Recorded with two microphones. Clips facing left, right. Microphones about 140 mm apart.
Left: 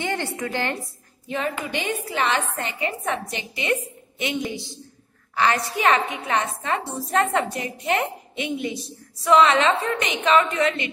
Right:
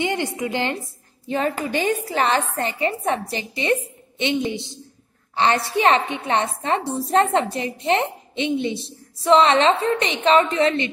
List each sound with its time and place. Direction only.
0.0 s a woman's voice: 15° right (ahead or behind)
1.3 s a woman's voice: 35° right (ahead or behind)